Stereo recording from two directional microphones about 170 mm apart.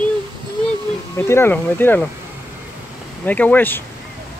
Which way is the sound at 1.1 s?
15° left (ahead or behind).